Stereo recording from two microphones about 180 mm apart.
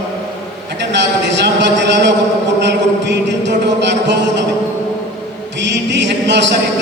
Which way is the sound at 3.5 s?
75° right (ahead or behind).